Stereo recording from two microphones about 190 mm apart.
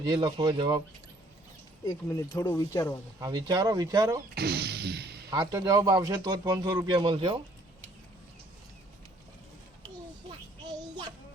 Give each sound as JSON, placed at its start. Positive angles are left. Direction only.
{"t": 0.0, "sound": "speech", "side_deg": -25}
{"t": 1.8, "sound": "speech", "side_deg": 20}
{"t": 3.2, "sound": "speech", "side_deg": -20}
{"t": 4.4, "sound": "a sound", "side_deg": -60}
{"t": 5.3, "sound": "speech", "side_deg": -20}